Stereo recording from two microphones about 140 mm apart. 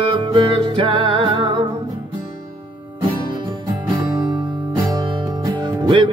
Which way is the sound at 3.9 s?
30° right (ahead or behind).